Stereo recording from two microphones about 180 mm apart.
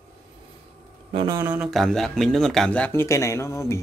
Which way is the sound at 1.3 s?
10° right (ahead or behind).